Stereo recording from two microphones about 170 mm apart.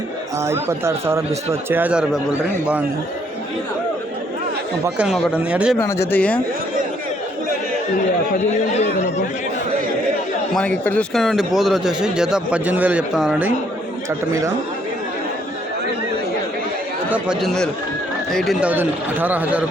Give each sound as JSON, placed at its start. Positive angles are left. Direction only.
{"t": 0.3, "sound": "speech", "side_deg": -15}
{"t": 4.9, "sound": "speech", "side_deg": -5}
{"t": 5.8, "sound": "speech", "side_deg": 15}
{"t": 10.5, "sound": "speech", "side_deg": 5}
{"t": 17.1, "sound": "speech", "side_deg": 0}
{"t": 18.7, "sound": "speech", "side_deg": -10}